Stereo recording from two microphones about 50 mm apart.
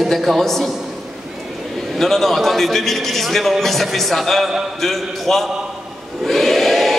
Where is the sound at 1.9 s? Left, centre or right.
Centre.